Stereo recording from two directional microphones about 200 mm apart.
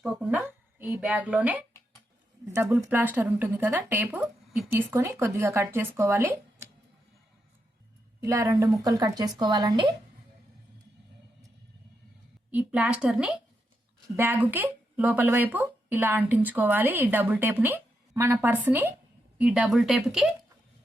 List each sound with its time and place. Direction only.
0.0 s a woman's voice: 5° right (ahead or behind)
8.2 s speech: 15° right (ahead or behind)
12.5 s a woman's voice: 5° right (ahead or behind)